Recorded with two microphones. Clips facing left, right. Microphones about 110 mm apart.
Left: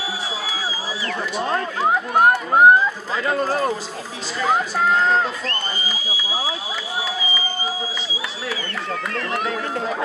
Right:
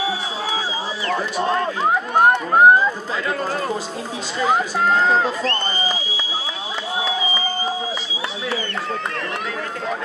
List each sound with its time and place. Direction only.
1.8 s speech: centre (ahead or behind)
3.3 s a man's voice: 30° left (ahead or behind)
4.5 s speech: centre (ahead or behind)
5.4 s speech: 30° right (ahead or behind)